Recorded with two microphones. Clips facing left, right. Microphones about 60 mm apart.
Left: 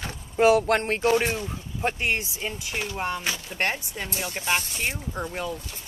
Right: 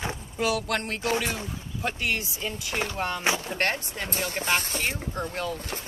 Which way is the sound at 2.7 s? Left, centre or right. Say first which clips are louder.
Right 3 dB; right.